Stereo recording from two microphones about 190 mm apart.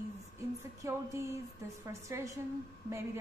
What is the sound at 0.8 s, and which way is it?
A woman's voice, 15° right (ahead or behind).